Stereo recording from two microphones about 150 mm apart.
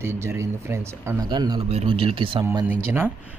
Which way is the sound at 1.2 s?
30° right (ahead or behind).